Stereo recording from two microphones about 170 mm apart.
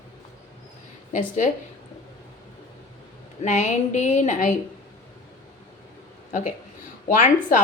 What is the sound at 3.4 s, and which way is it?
Speech, 45° left (ahead or behind).